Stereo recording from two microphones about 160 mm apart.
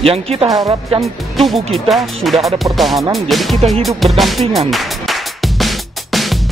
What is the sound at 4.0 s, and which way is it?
Music, centre (ahead or behind).